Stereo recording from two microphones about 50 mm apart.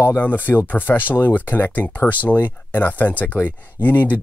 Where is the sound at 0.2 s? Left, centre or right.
Left.